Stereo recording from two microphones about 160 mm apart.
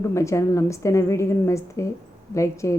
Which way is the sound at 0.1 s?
20° left (ahead or behind).